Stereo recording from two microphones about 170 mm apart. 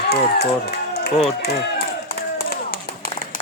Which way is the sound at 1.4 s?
75° left (ahead or behind).